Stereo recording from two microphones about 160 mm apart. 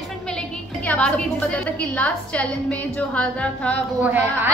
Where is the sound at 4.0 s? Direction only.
10° right (ahead or behind).